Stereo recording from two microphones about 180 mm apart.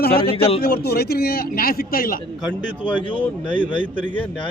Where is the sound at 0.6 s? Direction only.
60° left (ahead or behind).